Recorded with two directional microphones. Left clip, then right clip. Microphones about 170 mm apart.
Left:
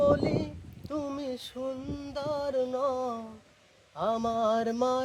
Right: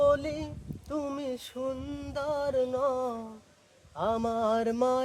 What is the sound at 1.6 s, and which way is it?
Mantra, 10° right (ahead or behind).